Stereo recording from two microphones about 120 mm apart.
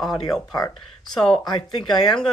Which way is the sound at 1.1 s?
5° left (ahead or behind).